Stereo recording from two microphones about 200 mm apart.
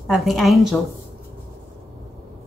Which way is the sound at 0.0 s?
Centre (ahead or behind).